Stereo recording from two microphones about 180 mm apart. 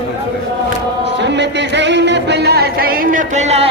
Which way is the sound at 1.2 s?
75° right (ahead or behind).